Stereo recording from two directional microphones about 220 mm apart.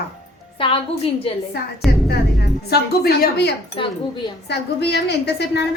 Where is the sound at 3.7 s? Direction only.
20° left (ahead or behind).